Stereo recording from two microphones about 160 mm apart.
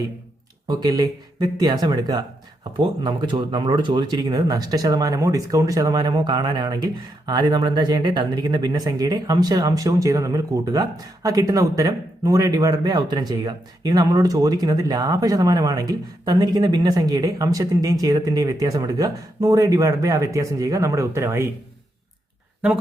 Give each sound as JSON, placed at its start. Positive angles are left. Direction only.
{"t": 0.7, "sound": "speech", "side_deg": -25}